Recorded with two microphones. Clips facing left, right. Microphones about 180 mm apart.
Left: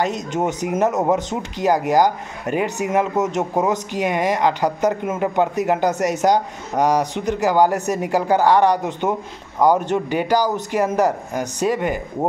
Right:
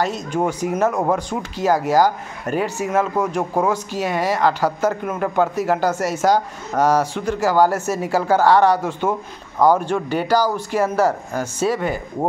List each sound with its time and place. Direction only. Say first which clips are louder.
0.0 s speech: even; 20° left (ahead or behind)